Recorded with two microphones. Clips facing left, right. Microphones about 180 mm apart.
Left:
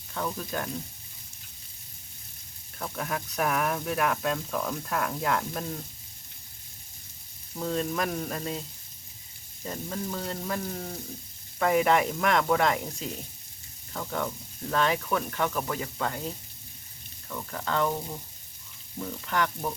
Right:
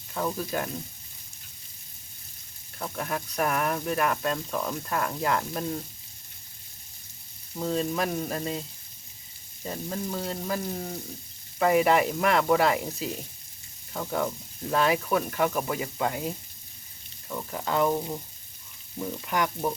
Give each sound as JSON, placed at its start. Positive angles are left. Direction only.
{"t": 0.1, "sound": "speech", "side_deg": -5}
{"t": 2.7, "sound": "speech", "side_deg": 0}
{"t": 7.5, "sound": "speech", "side_deg": 0}
{"t": 9.6, "sound": "speech", "side_deg": -5}